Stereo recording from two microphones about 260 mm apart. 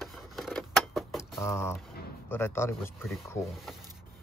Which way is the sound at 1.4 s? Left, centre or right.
Centre.